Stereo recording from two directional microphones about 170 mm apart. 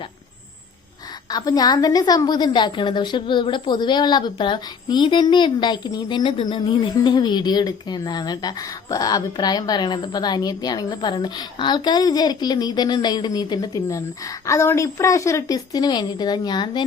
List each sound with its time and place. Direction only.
1.3 s a woman's voice: 25° left (ahead or behind)